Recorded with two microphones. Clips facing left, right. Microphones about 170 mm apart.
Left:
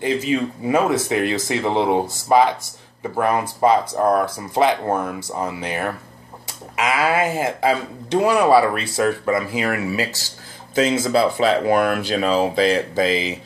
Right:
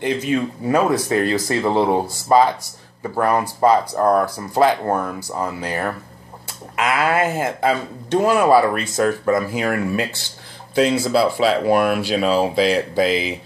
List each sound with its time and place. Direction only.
0.0 s speech: 5° left (ahead or behind)
0.8 s speech: 20° left (ahead or behind); by 10.0 s 5° left (ahead or behind)
11.1 s speech: 5° right (ahead or behind)